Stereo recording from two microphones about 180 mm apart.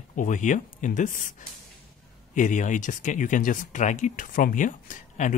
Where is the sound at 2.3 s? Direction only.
45° left (ahead or behind).